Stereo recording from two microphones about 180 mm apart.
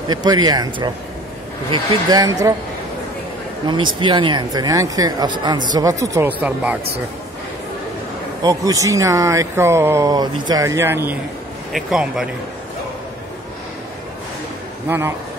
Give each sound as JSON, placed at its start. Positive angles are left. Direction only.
{"t": 0.1, "sound": "speech", "side_deg": -20}
{"t": 3.6, "sound": "speech", "side_deg": -25}
{"t": 8.4, "sound": "speech", "side_deg": -20}
{"t": 11.7, "sound": "a man's voice", "side_deg": 0}
{"t": 14.9, "sound": "speech", "side_deg": -15}